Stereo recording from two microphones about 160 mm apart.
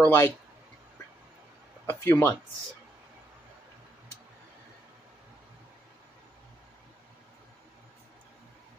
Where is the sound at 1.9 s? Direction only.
15° left (ahead or behind).